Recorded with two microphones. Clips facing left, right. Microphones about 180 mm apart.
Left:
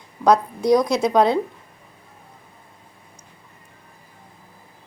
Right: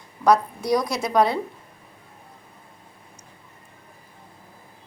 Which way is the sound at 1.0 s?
20° left (ahead or behind).